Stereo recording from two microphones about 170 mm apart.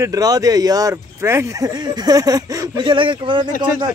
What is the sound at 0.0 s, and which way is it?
Speech, 20° right (ahead or behind).